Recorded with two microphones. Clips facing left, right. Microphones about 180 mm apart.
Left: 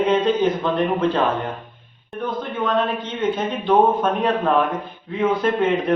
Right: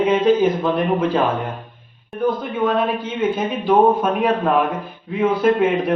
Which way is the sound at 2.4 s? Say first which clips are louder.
Right 2 dB; 10° right (ahead or behind).